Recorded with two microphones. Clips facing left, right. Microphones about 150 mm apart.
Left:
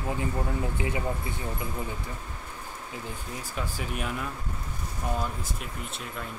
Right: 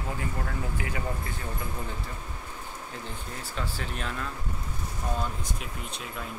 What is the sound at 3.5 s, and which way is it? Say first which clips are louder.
Speech: left 1 dB; 10° left (ahead or behind).